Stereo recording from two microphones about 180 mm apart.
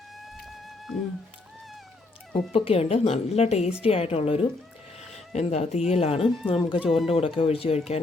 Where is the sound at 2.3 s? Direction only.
30° left (ahead or behind).